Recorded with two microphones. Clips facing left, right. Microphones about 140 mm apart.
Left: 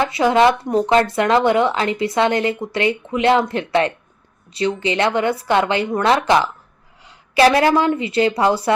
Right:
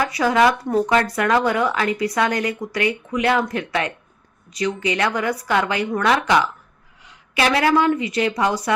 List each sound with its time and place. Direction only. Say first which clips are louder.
0.0 s a woman's voice: left 3 dB; 25° left (ahead or behind)